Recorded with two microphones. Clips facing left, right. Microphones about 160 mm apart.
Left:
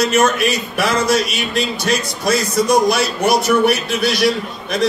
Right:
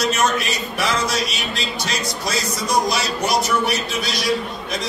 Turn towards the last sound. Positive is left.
turn(degrees=60)  # may be behind; listen again after turning